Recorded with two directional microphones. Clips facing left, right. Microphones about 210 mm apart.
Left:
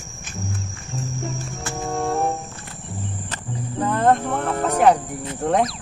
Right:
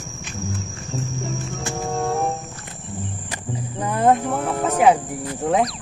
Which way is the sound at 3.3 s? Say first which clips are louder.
Right 1 dB; 10° right (ahead or behind).